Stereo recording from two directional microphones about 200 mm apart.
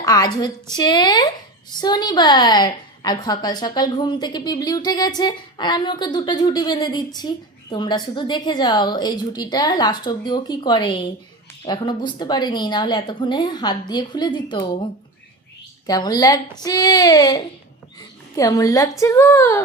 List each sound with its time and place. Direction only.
0.0 s a woman's voice: 20° left (ahead or behind)
15.9 s a woman's voice: 20° left (ahead or behind)